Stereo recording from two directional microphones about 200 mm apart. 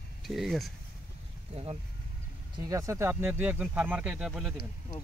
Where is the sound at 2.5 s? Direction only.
15° right (ahead or behind).